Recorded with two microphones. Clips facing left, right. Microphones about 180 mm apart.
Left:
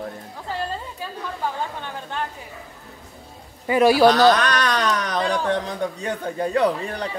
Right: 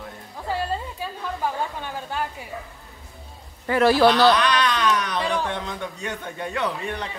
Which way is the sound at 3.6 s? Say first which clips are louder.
Left 2 dB; 15° left (ahead or behind).